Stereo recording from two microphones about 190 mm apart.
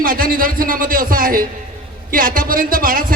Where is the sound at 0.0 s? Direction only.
50° right (ahead or behind).